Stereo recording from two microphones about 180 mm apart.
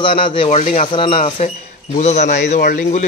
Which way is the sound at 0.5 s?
40° left (ahead or behind).